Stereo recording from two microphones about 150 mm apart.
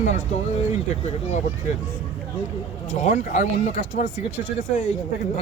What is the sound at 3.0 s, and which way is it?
A man's voice, 55° left (ahead or behind).